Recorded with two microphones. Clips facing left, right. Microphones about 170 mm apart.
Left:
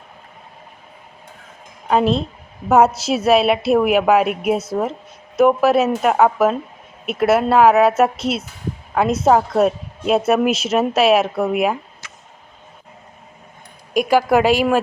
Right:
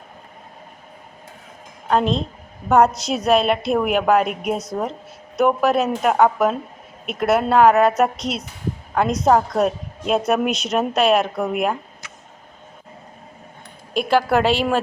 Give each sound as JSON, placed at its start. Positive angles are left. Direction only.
{"t": 1.9, "sound": "a woman's voice", "side_deg": 5}
{"t": 13.9, "sound": "a woman's voice", "side_deg": 10}